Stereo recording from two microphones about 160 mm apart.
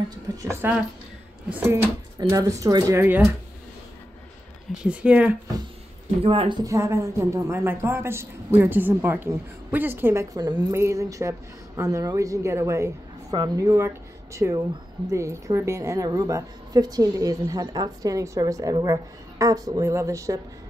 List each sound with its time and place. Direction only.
0.4 s a woman's voice: 15° right (ahead or behind)
4.8 s a woman's voice: 5° right (ahead or behind)
6.2 s speech: 35° right (ahead or behind)
6.6 s a woman's voice: 20° right (ahead or behind)